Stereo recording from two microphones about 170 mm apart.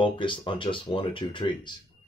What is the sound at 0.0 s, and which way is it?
Speech, 30° left (ahead or behind).